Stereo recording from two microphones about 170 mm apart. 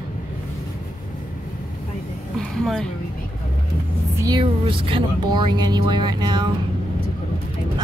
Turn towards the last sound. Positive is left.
turn(degrees=-25)  # may be behind; listen again after turning